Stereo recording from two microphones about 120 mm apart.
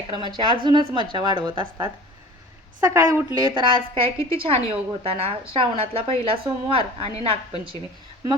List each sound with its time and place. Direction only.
0.1 s speech: 40° right (ahead or behind)
2.8 s a woman's voice: 25° right (ahead or behind)
3.3 s a woman's voice: 40° right (ahead or behind)